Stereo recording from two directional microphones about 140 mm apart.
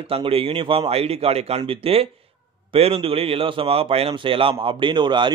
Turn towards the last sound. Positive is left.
turn(degrees=-35)  # may be behind; listen again after turning